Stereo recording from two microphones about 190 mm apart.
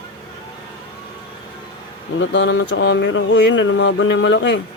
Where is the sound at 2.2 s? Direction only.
75° left (ahead or behind).